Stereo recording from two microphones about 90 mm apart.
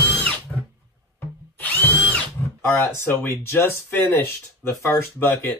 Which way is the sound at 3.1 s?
25° left (ahead or behind).